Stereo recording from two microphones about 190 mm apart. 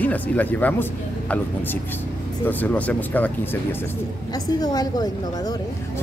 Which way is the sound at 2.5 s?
10° left (ahead or behind).